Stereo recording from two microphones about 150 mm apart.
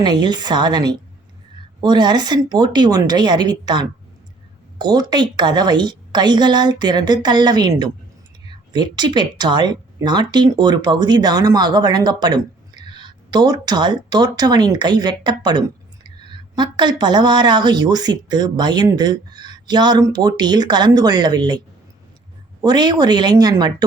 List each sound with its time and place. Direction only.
0.0 s speech: 30° right (ahead or behind)
22.6 s speech: 30° right (ahead or behind)